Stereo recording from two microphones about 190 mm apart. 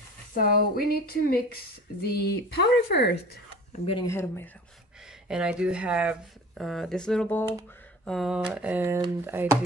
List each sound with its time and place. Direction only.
0.4 s speech: 50° left (ahead or behind)
3.9 s speech: 15° left (ahead or behind)
5.3 s speech: 5° right (ahead or behind)